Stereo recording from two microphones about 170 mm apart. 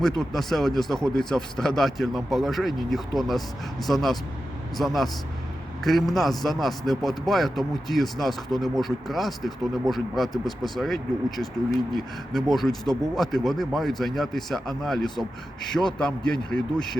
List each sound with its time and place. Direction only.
0.0 s a man's voice: centre (ahead or behind)